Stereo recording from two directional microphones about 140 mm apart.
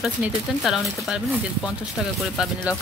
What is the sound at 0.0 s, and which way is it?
Speech, 5° right (ahead or behind).